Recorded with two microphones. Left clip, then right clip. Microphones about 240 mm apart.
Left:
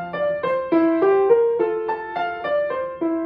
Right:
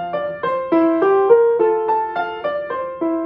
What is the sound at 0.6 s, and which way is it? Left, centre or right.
Music, centre.